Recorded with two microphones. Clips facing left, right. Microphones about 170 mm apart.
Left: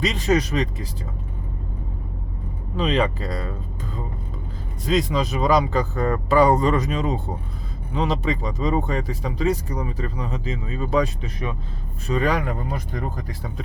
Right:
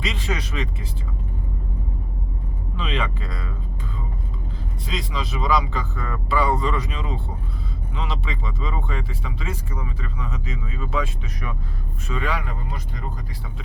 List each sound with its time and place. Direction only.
0.0 s speech: 40° left (ahead or behind)
2.7 s speech: 40° left (ahead or behind)
4.9 s speech: 45° left (ahead or behind)